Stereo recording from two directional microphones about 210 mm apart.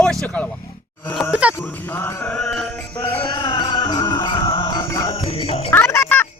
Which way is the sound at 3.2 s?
20° left (ahead or behind).